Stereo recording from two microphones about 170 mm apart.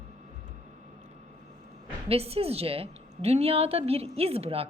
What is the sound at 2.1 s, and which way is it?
A woman's voice, 35° right (ahead or behind).